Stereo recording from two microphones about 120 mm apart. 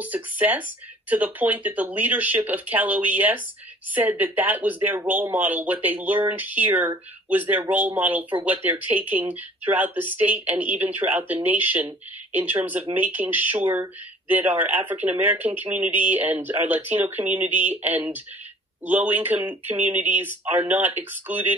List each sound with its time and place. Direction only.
0.0 s speech: 15° right (ahead or behind)